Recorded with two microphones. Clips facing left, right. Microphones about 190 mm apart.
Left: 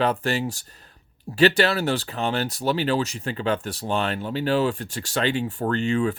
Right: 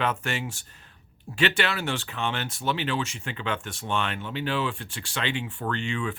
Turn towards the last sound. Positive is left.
turn(degrees=40)  # may be behind; listen again after turning